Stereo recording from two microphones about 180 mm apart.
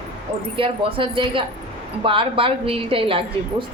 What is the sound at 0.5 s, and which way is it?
A woman's voice, 30° right (ahead or behind).